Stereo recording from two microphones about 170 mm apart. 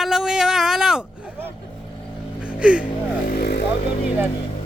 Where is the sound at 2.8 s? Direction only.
60° left (ahead or behind).